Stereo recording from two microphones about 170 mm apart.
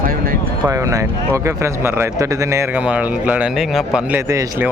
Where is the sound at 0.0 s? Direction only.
60° right (ahead or behind).